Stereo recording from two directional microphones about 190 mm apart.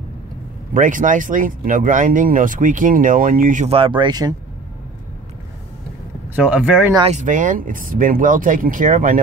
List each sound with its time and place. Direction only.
0.7 s speech: 45° right (ahead or behind); by 4.4 s 20° right (ahead or behind)
6.3 s speech: 5° right (ahead or behind)
7.1 s speech: 40° right (ahead or behind)